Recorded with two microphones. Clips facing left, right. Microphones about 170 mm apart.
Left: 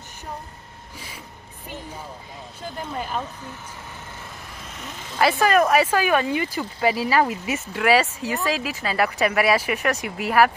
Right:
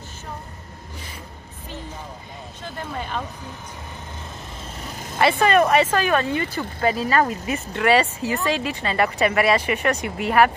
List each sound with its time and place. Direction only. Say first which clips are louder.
2.9 s speech: left 1 dB; 5° left (ahead or behind)
4.6 s vehicle: right 2 dB; 35° right (ahead or behind)
5.2 s speech: right 1 dB; centre (ahead or behind)